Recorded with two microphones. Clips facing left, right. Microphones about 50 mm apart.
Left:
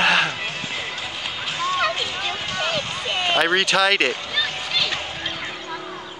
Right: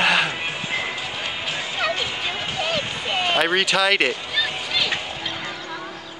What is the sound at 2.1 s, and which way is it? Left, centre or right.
Music, centre.